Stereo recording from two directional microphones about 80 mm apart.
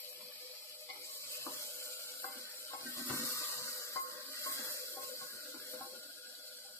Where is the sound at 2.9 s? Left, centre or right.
Left.